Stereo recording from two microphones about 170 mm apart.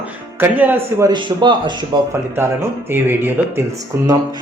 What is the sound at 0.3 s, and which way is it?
Speech, 10° right (ahead or behind).